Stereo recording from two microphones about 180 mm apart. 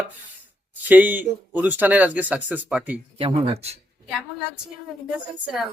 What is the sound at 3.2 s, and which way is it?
Speech, 30° right (ahead or behind).